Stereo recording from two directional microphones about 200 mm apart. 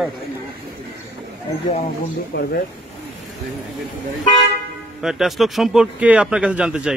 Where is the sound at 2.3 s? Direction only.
55° left (ahead or behind).